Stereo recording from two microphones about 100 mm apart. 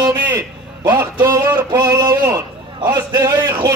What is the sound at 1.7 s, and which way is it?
A man's voice, 35° right (ahead or behind).